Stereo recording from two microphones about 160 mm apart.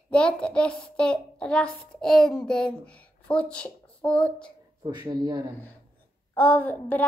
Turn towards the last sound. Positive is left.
turn(degrees=10)  # may be behind; listen again after turning